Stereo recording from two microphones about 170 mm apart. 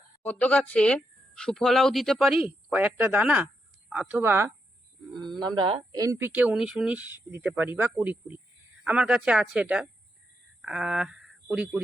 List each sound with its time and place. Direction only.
0.2 s speech: 10° left (ahead or behind); by 4.5 s 15° right (ahead or behind)
5.4 s speech: 25° right (ahead or behind); by 11.8 s 5° right (ahead or behind)